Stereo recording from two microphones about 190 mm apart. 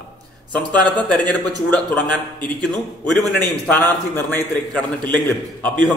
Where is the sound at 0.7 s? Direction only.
5° left (ahead or behind).